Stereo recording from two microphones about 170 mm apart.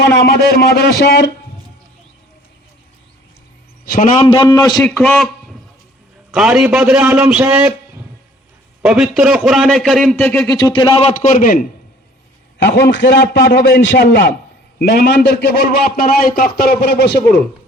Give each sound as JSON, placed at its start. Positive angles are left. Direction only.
{"t": 0.5, "sound": "a man's voice", "side_deg": 70}
{"t": 3.8, "sound": "a man's voice", "side_deg": 60}
{"t": 4.2, "sound": "a man's voice", "side_deg": 30}
{"t": 4.8, "sound": "a man's voice", "side_deg": 0}
{"t": 6.3, "sound": "a man's voice", "side_deg": 0}
{"t": 10.7, "sound": "speech", "side_deg": 30}
{"t": 11.1, "sound": "a man's voice", "side_deg": 50}
{"t": 12.6, "sound": "a man's voice", "side_deg": 90}
{"t": 14.8, "sound": "a man's voice", "side_deg": 65}